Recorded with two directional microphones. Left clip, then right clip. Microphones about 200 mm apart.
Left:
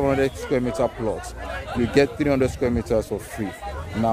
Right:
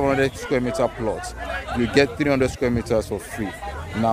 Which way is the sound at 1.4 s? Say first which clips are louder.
Right 2 dB; 60° left (ahead or behind).